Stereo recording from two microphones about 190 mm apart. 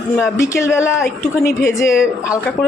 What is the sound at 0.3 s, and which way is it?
Speech, 15° left (ahead or behind).